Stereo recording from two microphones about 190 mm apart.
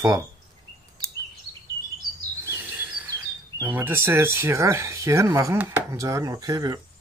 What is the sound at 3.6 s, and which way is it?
Speech, 10° right (ahead or behind).